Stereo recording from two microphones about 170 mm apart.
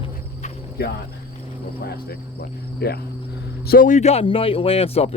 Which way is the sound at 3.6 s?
55° left (ahead or behind).